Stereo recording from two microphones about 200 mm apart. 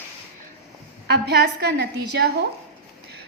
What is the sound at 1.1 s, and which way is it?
A woman's voice, 55° right (ahead or behind).